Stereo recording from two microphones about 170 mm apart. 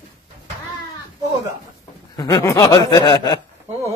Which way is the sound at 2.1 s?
25° left (ahead or behind).